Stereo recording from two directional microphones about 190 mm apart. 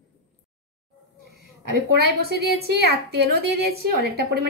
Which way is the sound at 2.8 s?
55° right (ahead or behind).